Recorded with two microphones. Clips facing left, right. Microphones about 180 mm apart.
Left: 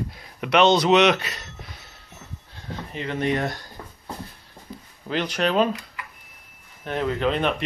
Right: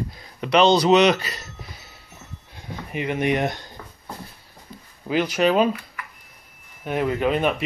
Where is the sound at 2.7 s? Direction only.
15° right (ahead or behind).